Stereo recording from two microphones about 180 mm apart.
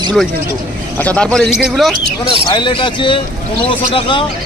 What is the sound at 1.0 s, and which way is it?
Speech, 5° left (ahead or behind).